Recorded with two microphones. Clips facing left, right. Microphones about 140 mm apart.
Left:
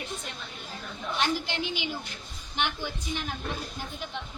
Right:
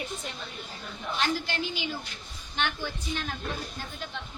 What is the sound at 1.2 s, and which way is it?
Speech, 15° left (ahead or behind).